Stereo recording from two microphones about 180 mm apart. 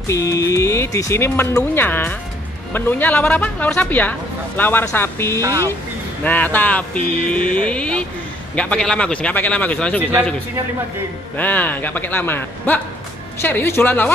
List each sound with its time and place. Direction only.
0.1 s speech: 20° left (ahead or behind)
11.3 s speech: 10° left (ahead or behind)